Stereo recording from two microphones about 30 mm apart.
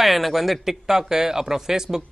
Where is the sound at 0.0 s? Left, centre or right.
Centre.